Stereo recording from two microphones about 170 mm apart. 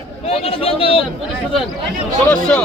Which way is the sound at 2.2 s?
5° left (ahead or behind).